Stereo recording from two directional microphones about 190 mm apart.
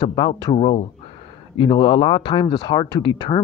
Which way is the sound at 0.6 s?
35° left (ahead or behind).